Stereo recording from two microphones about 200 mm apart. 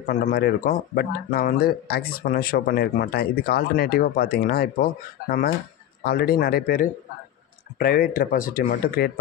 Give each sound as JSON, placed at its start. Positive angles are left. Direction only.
{"t": 0.0, "sound": "speech", "side_deg": 40}
{"t": 6.0, "sound": "speech", "side_deg": 50}